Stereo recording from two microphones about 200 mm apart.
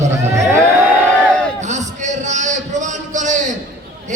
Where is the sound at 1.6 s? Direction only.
35° right (ahead or behind).